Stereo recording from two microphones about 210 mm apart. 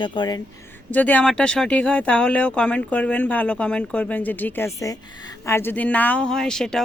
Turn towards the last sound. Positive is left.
turn(degrees=5)  # may be behind; listen again after turning